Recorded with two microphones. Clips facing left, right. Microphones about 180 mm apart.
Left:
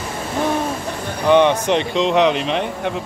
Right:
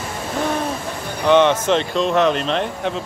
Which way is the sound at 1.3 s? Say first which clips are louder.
Even; 15° left (ahead or behind).